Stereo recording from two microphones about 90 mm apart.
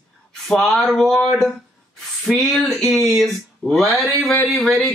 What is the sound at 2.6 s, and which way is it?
Speech, 20° left (ahead or behind).